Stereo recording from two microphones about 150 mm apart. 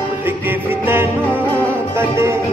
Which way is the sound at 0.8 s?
15° right (ahead or behind).